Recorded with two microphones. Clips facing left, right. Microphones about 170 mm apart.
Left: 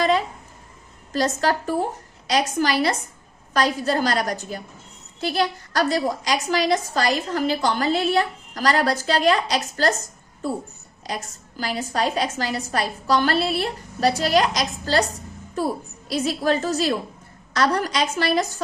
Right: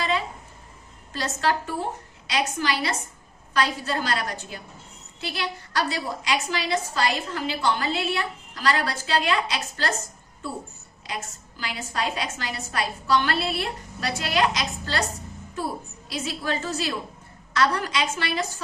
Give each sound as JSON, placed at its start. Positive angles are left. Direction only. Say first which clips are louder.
{"t": 1.1, "sound": "a woman's voice", "louder": "left 4 dB", "side_deg": 40}
{"t": 11.0, "sound": "a woman's voice", "louder": "left 3 dB", "side_deg": 40}
{"t": 16.0, "sound": "a woman's voice", "louder": "left 8 dB", "side_deg": 40}